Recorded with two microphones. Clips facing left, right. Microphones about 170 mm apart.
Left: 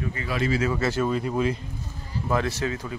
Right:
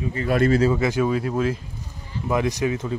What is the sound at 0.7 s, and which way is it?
Speech, 15° right (ahead or behind).